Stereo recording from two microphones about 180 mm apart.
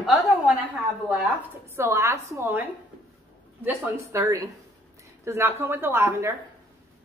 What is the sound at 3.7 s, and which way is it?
A woman's voice, 15° right (ahead or behind).